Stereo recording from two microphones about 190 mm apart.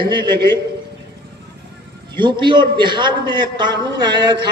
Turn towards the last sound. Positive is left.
turn(degrees=-20)  # may be behind; listen again after turning